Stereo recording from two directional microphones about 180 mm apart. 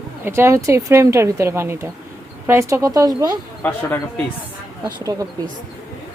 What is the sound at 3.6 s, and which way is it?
Speech, 10° left (ahead or behind).